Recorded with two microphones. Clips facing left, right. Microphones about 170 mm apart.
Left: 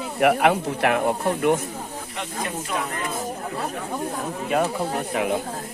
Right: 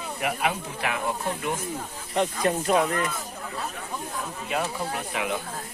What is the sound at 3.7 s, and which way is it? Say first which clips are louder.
Speech: left 7 dB; 40° left (ahead or behind).